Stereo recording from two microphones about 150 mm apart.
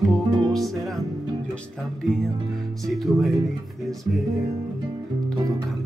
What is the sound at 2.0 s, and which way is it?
Music, centre (ahead or behind).